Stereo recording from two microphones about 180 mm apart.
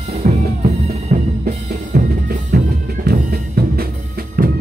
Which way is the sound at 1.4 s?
50° right (ahead or behind).